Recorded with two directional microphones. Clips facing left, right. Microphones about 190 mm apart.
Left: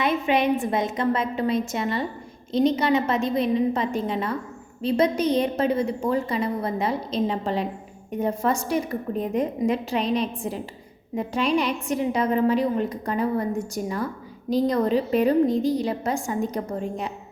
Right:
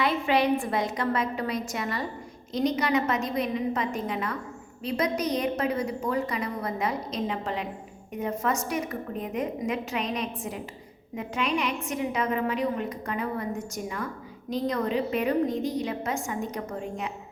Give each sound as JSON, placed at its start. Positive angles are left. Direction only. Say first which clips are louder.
{"t": 0.0, "sound": "a woman's voice", "louder": "left 2 dB", "side_deg": 20}